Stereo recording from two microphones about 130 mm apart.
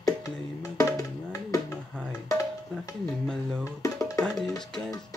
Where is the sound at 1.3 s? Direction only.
25° left (ahead or behind).